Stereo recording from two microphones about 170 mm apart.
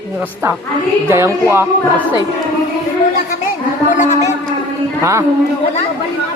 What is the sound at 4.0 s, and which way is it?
Speech, 45° left (ahead or behind).